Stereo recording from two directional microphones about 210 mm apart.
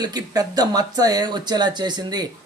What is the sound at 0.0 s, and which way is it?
Speech, 20° right (ahead or behind).